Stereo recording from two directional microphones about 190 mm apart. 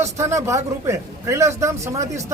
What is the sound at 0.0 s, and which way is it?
Speech, 15° right (ahead or behind).